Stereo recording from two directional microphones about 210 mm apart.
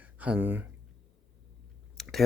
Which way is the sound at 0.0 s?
5° right (ahead or behind).